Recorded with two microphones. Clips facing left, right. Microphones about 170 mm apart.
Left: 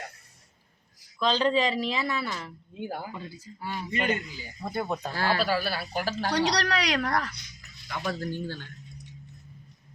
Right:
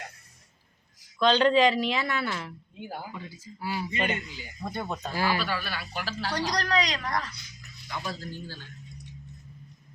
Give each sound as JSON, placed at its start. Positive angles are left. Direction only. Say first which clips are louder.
{"t": 1.2, "sound": "speech", "louder": "right 4 dB", "side_deg": 0}
{"t": 5.1, "sound": "speech", "louder": "right 1 dB", "side_deg": -10}
{"t": 5.4, "sound": "speech", "louder": "left 5 dB", "side_deg": 35}
{"t": 6.3, "sound": "a woman's voice", "louder": "even", "side_deg": 75}
{"t": 8.0, "sound": "speech", "louder": "left 9 dB", "side_deg": 55}